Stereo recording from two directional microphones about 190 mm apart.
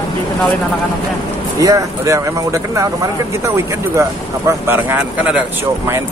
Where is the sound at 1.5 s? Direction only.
15° right (ahead or behind).